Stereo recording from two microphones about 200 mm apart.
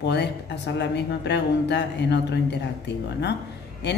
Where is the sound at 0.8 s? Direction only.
60° left (ahead or behind).